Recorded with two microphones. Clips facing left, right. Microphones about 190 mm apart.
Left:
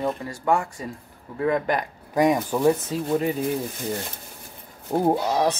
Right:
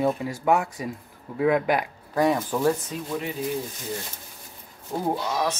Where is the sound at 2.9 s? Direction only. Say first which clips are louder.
Left 7 dB; 40° left (ahead or behind).